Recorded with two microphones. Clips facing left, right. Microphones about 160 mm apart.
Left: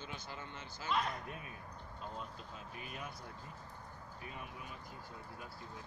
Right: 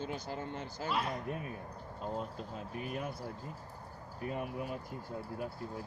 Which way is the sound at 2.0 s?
45° right (ahead or behind).